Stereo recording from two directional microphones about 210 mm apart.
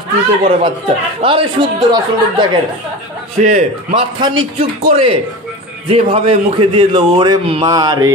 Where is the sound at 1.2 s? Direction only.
25° right (ahead or behind).